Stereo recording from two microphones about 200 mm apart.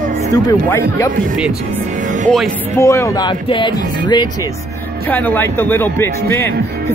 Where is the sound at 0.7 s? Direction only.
15° left (ahead or behind).